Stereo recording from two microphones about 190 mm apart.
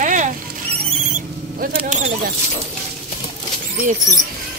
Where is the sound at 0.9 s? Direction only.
40° right (ahead or behind).